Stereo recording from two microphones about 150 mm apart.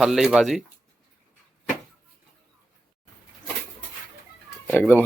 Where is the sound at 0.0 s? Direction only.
5° right (ahead or behind).